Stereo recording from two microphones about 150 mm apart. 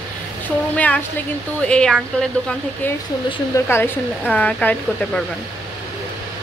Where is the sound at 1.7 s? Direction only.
5° left (ahead or behind).